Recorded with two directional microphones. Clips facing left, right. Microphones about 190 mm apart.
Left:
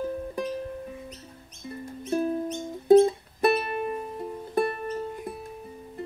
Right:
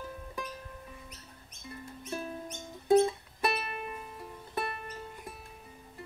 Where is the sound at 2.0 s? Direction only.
35° left (ahead or behind).